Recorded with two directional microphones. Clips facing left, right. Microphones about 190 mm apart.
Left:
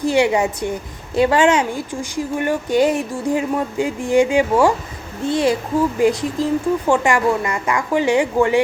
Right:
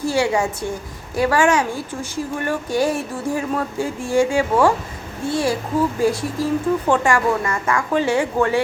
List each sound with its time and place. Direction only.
0.0 s a woman's voice: 20° left (ahead or behind)